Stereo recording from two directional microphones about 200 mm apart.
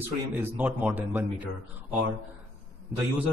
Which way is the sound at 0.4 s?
10° right (ahead or behind).